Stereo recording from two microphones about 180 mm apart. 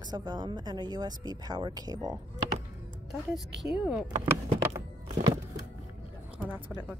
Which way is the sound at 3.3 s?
5° right (ahead or behind).